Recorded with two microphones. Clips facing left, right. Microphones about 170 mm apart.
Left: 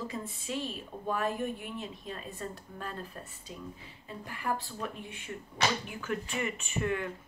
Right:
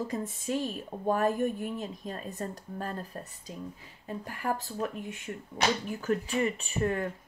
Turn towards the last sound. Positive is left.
turn(degrees=-40)  # may be behind; listen again after turning